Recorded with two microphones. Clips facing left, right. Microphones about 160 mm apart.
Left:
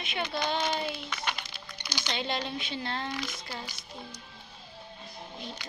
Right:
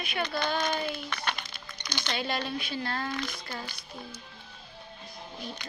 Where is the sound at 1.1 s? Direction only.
10° left (ahead or behind).